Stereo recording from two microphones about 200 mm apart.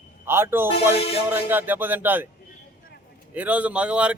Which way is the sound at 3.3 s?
5° right (ahead or behind).